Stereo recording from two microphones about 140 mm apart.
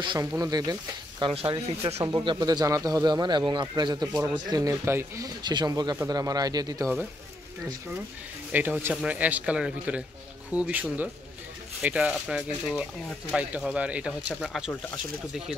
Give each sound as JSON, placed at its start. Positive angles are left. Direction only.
{"t": 0.2, "sound": "speech", "side_deg": -25}
{"t": 1.2, "sound": "speech", "side_deg": -40}
{"t": 2.0, "sound": "speech", "side_deg": -30}
{"t": 8.5, "sound": "a man's voice", "side_deg": -10}